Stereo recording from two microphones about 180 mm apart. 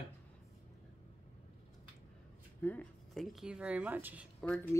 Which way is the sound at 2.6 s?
10° left (ahead or behind).